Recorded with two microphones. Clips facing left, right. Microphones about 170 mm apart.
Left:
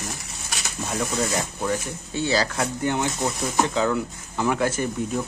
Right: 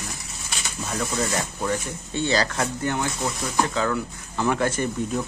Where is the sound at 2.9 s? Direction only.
20° left (ahead or behind).